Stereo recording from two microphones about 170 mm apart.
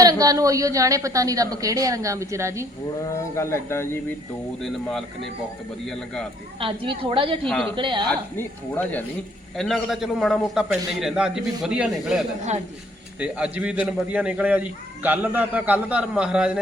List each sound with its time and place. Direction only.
0.0 s a woman's voice: 20° right (ahead or behind)
3.1 s speech: 15° left (ahead or behind)
4.6 s a man's voice: centre (ahead or behind)
6.6 s a woman's voice: 30° right (ahead or behind)
7.4 s a man's voice: 5° left (ahead or behind)
7.8 s a woman's voice: 30° right (ahead or behind)
8.4 s a man's voice: 10° left (ahead or behind); by 16.6 s 5° right (ahead or behind)